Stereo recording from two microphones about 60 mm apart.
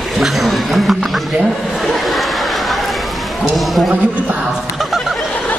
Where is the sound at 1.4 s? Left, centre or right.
Centre.